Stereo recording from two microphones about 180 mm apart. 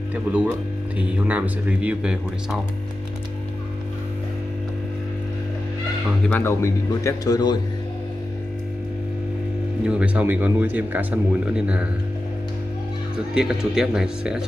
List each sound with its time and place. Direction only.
0.1 s speech: 5° right (ahead or behind)
6.2 s speech: 10° left (ahead or behind)
9.8 s speech: 5° right (ahead or behind)
13.3 s speech: 5° right (ahead or behind)